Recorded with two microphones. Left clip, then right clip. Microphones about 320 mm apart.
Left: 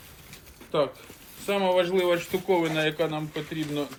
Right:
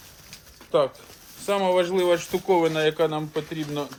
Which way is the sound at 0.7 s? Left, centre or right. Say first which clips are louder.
Right 4 dB; right.